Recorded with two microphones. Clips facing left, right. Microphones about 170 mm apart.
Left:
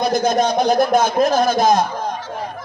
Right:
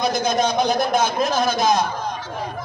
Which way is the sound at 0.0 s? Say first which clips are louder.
Left 3 dB; 55° left (ahead or behind).